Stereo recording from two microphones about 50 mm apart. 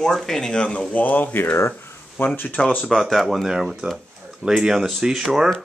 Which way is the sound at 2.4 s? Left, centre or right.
Left.